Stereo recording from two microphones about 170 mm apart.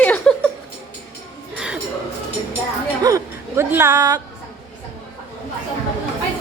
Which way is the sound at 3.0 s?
20° right (ahead or behind).